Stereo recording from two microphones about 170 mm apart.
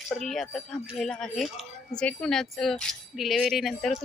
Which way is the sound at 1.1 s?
5° left (ahead or behind).